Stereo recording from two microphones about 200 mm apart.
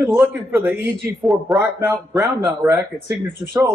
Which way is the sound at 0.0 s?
Centre (ahead or behind).